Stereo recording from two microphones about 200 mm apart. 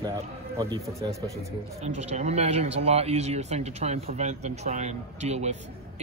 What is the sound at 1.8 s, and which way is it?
Speech, 35° right (ahead or behind).